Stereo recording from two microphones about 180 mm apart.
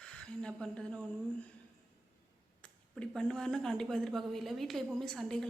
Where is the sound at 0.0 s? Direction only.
5° left (ahead or behind).